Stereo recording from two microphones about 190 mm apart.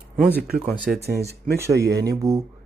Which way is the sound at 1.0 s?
55° right (ahead or behind).